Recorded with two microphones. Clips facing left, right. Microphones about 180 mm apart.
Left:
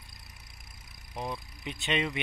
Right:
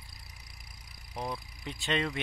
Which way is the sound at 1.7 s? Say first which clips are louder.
Left 1 dB; 20° left (ahead or behind).